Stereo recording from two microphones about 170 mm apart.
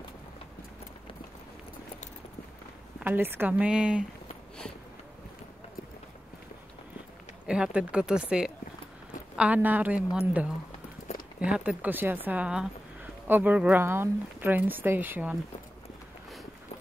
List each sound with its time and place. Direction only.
3.0 s speech: 10° right (ahead or behind)
7.4 s speech: 5° right (ahead or behind)
11.1 s a sound: 40° left (ahead or behind)
11.4 s speech: 10° right (ahead or behind)